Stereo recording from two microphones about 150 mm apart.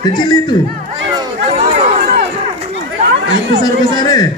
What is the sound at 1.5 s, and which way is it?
Chatter, 50° right (ahead or behind).